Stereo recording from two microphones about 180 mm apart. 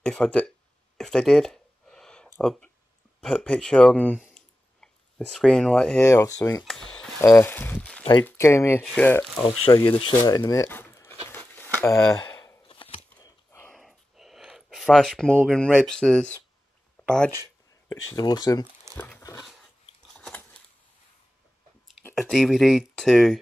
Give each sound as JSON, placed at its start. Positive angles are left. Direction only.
{"t": 0.0, "sound": "speech", "side_deg": 5}
{"t": 0.9, "sound": "a sound", "side_deg": 0}
{"t": 3.2, "sound": "speech", "side_deg": 5}
{"t": 4.2, "sound": "clicking", "side_deg": 5}
{"t": 6.0, "sound": "speech", "side_deg": 15}
{"t": 6.6, "sound": "speech", "side_deg": 0}
{"t": 9.5, "sound": "speech", "side_deg": 30}
{"t": 13.2, "sound": "a sound", "side_deg": 10}
{"t": 13.7, "sound": "a sound", "side_deg": 0}
{"t": 15.8, "sound": "speech", "side_deg": 5}
{"t": 17.8, "sound": "speech", "side_deg": 20}
{"t": 18.9, "sound": "dog", "side_deg": 10}
{"t": 19.4, "sound": "a sound", "side_deg": 0}
{"t": 22.1, "sound": "speech", "side_deg": 0}